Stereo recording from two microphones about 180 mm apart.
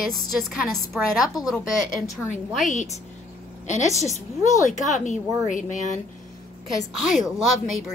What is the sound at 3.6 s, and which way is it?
A woman's voice, 40° left (ahead or behind).